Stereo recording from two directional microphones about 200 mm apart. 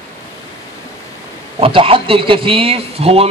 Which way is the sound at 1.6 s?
25° right (ahead or behind).